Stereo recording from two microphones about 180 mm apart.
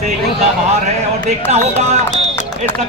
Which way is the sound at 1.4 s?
40° right (ahead or behind).